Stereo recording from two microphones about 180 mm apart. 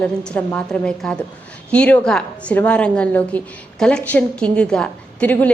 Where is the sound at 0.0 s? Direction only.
10° left (ahead or behind).